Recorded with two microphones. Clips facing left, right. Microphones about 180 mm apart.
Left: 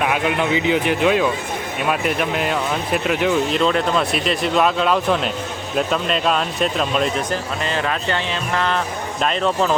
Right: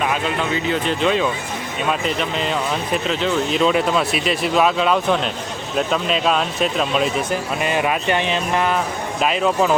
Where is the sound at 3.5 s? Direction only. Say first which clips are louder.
Right 1 dB; 5° right (ahead or behind).